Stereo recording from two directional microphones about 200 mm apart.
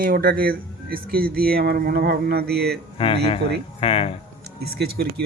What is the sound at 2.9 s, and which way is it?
Speech, 25° left (ahead or behind).